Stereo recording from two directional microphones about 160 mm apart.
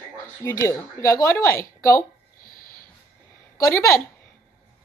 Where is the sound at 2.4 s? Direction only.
60° left (ahead or behind).